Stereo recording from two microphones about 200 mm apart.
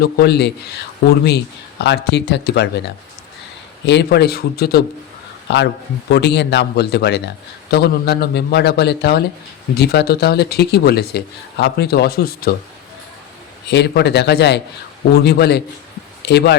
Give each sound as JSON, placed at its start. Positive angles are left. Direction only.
{"t": 0.0, "sound": "speech", "side_deg": 55}
{"t": 1.8, "sound": "speech", "side_deg": 55}
{"t": 13.7, "sound": "speech", "side_deg": 55}